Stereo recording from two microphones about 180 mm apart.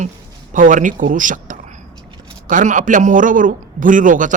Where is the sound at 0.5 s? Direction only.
45° right (ahead or behind).